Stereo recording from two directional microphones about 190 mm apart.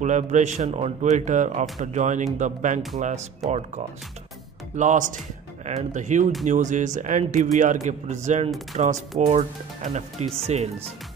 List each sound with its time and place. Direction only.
0.0 s speech: 40° right (ahead or behind)